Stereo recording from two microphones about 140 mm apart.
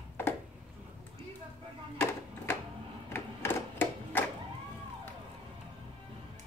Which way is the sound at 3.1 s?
15° left (ahead or behind).